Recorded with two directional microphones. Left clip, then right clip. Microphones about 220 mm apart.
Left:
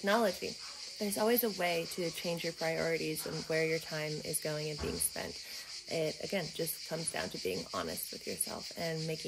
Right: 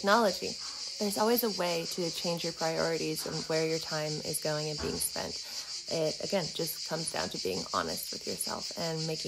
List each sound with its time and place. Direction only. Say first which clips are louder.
0.0 s speech: right 5 dB; 15° right (ahead or behind)